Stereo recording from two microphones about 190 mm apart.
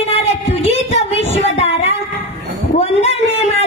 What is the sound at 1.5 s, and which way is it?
Child singing, 35° left (ahead or behind).